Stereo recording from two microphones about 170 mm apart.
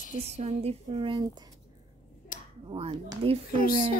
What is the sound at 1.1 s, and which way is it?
Speech, 20° right (ahead or behind).